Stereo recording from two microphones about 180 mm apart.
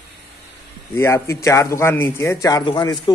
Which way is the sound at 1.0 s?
15° left (ahead or behind).